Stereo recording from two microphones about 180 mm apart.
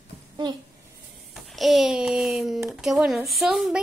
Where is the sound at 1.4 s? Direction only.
Centre (ahead or behind).